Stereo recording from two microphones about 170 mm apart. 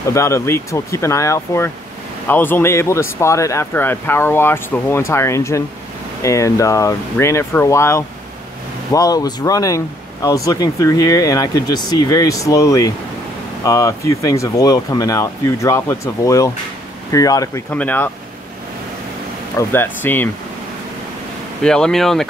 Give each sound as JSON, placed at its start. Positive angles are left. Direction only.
{"t": 0.1, "sound": "speech", "side_deg": 15}
{"t": 17.6, "sound": "speech", "side_deg": 10}
{"t": 19.5, "sound": "speech", "side_deg": 10}
{"t": 21.6, "sound": "speech", "side_deg": 5}